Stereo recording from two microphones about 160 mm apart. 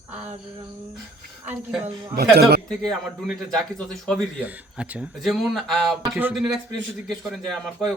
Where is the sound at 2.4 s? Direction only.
80° right.